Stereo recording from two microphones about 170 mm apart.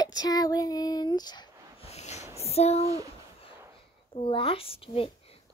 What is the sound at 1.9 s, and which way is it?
Snort, 40° left (ahead or behind).